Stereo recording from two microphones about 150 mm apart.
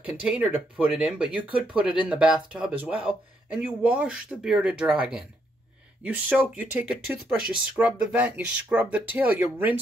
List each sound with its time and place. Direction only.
0.0 s speech: 5° right (ahead or behind)